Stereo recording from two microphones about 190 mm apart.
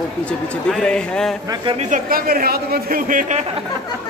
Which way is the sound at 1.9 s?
50° right (ahead or behind).